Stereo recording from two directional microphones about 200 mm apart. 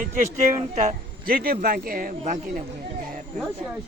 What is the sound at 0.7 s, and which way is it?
A man's voice, 35° right (ahead or behind).